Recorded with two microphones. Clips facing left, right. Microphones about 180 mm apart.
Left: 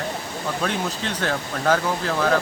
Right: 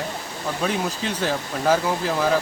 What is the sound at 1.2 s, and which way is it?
Speech, 10° right (ahead or behind).